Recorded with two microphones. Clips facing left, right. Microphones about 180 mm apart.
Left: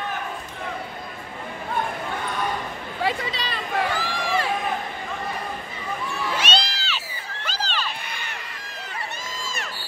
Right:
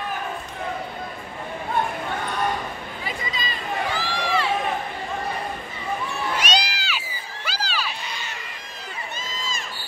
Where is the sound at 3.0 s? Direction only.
75° left (ahead or behind).